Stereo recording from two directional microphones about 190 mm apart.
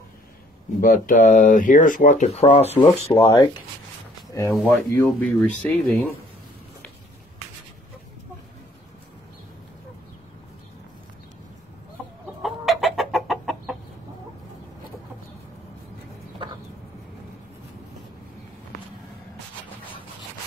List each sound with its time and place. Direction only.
0.7 s speech: 45° left (ahead or behind); by 6.0 s 5° left (ahead or behind)
12.4 s chicken: centre (ahead or behind)